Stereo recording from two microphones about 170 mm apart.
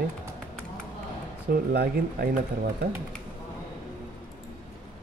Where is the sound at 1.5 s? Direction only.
65° right (ahead or behind).